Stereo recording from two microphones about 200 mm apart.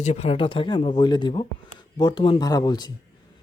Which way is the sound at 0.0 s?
35° left (ahead or behind).